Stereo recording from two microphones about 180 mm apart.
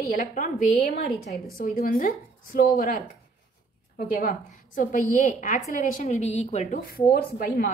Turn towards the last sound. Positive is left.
turn(degrees=55)  # may be behind; listen again after turning